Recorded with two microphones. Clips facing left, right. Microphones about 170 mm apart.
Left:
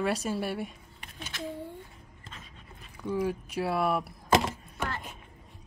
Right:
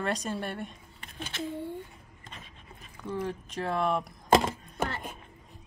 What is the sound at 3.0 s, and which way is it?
Speech, 10° left (ahead or behind).